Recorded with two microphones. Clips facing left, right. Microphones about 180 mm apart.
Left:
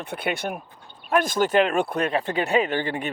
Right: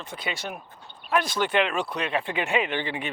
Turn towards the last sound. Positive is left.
turn(degrees=45)  # may be behind; listen again after turning